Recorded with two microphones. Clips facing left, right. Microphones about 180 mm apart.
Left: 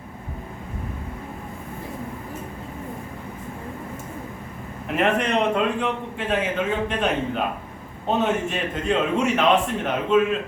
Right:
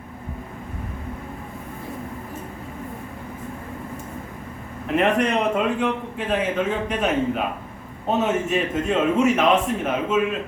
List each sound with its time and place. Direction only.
4.9 s a man's voice: centre (ahead or behind)